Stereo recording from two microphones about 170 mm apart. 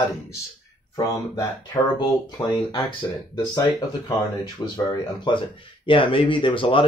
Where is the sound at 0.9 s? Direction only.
25° left (ahead or behind).